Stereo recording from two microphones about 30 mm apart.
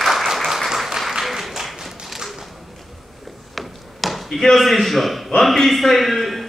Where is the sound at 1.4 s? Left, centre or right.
Centre.